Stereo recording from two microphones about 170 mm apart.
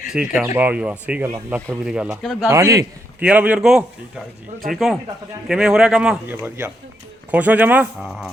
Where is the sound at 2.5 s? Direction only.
20° right (ahead or behind).